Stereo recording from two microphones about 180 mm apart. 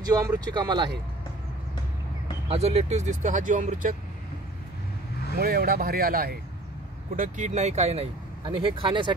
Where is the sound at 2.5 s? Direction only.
35° right (ahead or behind).